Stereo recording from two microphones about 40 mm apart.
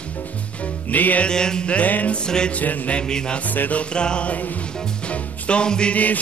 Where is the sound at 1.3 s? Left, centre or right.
Centre.